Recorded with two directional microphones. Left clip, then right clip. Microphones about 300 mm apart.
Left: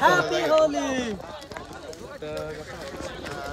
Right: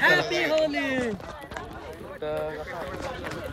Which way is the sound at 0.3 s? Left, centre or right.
Centre.